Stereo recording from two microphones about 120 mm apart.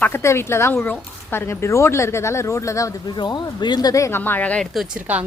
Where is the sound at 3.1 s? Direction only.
40° left (ahead or behind); by 4.6 s 10° left (ahead or behind).